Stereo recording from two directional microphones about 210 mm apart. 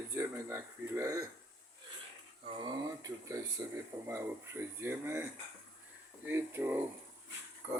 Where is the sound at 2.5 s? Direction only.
20° right (ahead or behind).